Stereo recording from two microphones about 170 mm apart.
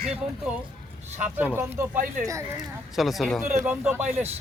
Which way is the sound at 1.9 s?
50° right (ahead or behind).